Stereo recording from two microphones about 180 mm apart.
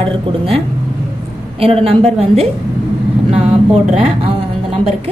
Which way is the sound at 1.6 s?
35° right (ahead or behind).